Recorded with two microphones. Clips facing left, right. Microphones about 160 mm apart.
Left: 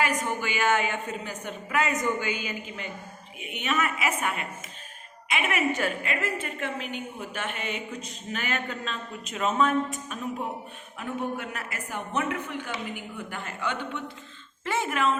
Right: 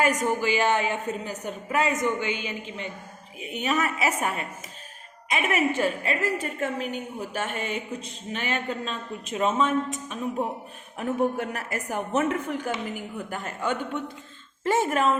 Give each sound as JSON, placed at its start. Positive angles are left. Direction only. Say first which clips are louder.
{"t": 0.0, "sound": "a woman's voice", "louder": "right 4 dB", "side_deg": -40}
{"t": 1.9, "sound": "a woman's voice", "louder": "right 2 dB", "side_deg": -25}
{"t": 8.3, "sound": "a woman's voice", "louder": "right 2 dB", "side_deg": -30}
{"t": 10.9, "sound": "a woman's voice", "louder": "right 6 dB", "side_deg": -40}